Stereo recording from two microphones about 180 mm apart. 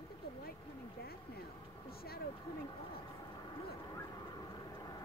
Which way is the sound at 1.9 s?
60° left (ahead or behind).